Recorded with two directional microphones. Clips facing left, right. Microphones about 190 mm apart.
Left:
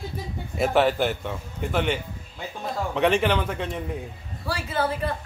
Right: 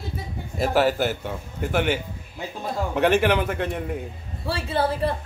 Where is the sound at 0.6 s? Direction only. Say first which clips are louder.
Even; 5° right (ahead or behind).